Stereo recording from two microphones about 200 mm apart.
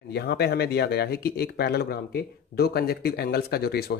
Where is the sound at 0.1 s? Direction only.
55° left (ahead or behind).